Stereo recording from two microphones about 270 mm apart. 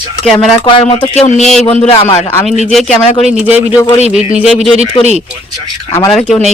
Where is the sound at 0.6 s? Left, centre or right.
Centre.